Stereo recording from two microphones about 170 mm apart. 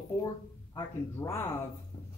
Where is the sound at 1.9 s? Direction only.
35° left (ahead or behind).